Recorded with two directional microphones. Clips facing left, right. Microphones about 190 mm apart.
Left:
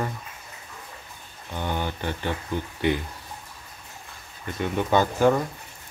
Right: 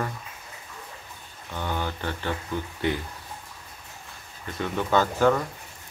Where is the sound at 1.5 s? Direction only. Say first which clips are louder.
Left 1 dB; 15° left (ahead or behind).